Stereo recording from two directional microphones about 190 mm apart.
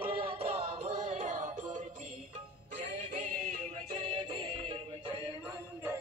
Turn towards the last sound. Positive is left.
turn(degrees=-25)  # may be behind; listen again after turning